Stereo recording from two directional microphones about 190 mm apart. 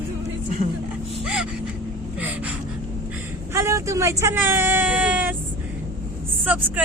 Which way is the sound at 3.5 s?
15° right (ahead or behind).